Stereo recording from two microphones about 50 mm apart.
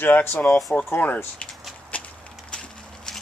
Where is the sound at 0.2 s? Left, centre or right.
Left.